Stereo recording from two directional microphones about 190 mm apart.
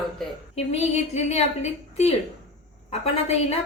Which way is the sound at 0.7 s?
35° left (ahead or behind).